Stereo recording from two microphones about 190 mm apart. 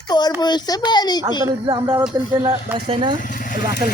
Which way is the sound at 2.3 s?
15° right (ahead or behind).